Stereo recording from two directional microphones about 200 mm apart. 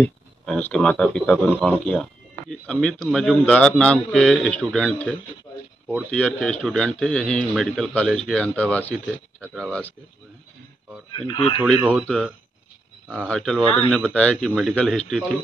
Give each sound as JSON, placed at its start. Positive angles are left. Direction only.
{"t": 0.0, "sound": "a man's voice", "side_deg": 10}
{"t": 11.1, "sound": "speech", "side_deg": 25}
{"t": 13.1, "sound": "a man's voice", "side_deg": 5}